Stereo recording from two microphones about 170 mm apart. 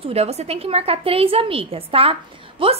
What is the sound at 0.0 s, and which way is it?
A woman's voice, 35° right (ahead or behind).